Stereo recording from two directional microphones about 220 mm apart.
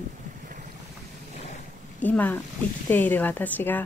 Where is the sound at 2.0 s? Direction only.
5° left (ahead or behind).